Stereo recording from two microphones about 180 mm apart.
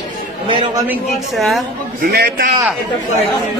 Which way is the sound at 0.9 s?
Centre (ahead or behind).